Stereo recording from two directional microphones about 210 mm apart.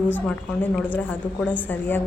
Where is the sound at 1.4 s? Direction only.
5° left (ahead or behind).